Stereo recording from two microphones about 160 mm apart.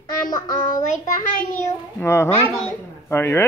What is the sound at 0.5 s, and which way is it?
Child singing, 55° left (ahead or behind).